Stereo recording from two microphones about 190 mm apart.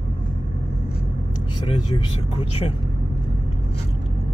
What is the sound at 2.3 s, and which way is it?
Speech, 30° left (ahead or behind).